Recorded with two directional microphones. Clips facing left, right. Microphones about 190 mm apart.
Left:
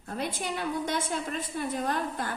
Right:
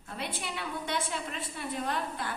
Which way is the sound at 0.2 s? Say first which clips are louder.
Left 5 dB; 45° left (ahead or behind).